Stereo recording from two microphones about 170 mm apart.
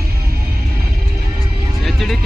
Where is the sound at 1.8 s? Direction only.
Centre (ahead or behind).